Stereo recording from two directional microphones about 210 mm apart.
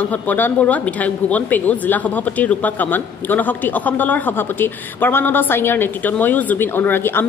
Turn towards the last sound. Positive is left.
turn(degrees=10)  # may be behind; listen again after turning